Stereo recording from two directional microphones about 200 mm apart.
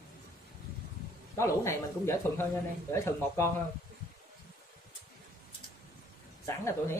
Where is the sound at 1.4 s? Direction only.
15° left (ahead or behind).